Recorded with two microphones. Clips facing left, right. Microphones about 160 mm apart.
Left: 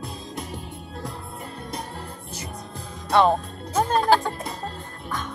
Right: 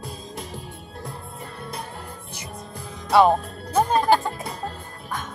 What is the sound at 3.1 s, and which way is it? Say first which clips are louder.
Music: right 2 dB; 10° right (ahead or behind).